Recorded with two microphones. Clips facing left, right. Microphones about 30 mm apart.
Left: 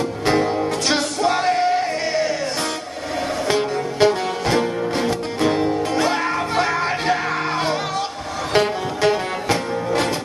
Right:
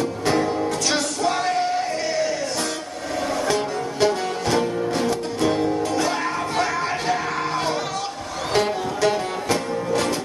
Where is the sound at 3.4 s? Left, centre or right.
Left.